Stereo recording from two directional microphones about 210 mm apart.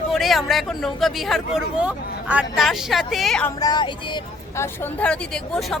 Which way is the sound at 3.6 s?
20° left (ahead or behind).